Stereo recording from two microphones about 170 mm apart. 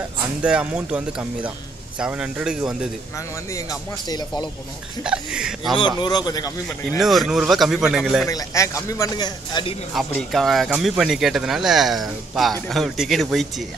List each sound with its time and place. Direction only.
0.4 s speech: 5° right (ahead or behind)
4.1 s speech: 25° left (ahead or behind)
5.0 s speech: 5° right (ahead or behind)
5.8 s speech: 25° left (ahead or behind)
7.0 s speech: centre (ahead or behind)
8.3 s speech: 20° left (ahead or behind)
9.9 s speech: centre (ahead or behind)